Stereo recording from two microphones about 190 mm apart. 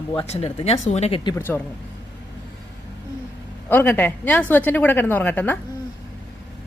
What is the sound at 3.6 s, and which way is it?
A woman's voice, 10° left (ahead or behind).